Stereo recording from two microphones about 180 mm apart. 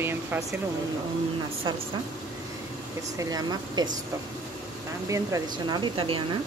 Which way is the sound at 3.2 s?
20° right (ahead or behind).